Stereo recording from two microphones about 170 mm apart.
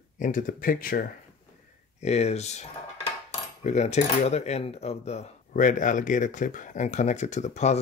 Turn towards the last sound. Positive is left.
turn(degrees=45)  # may be behind; listen again after turning